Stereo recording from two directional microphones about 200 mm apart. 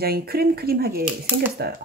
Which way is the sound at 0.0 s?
50° right (ahead or behind).